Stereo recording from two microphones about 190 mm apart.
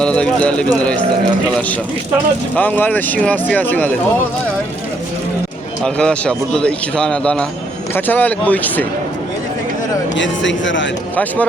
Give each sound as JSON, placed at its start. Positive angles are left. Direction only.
{"t": 0.0, "sound": "speech", "side_deg": 5}
{"t": 2.6, "sound": "speech", "side_deg": 10}
{"t": 5.8, "sound": "speech", "side_deg": 5}
{"t": 10.2, "sound": "speech", "side_deg": 75}